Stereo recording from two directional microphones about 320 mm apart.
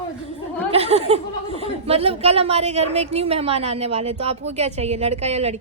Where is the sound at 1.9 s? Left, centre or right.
Centre.